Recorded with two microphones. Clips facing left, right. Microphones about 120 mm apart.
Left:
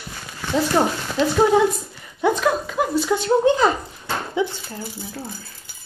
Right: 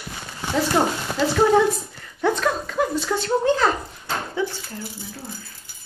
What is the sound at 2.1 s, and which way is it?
Speech, 10° left (ahead or behind).